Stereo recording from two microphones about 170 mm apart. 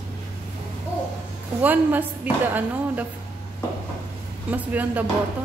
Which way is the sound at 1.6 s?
10° right (ahead or behind).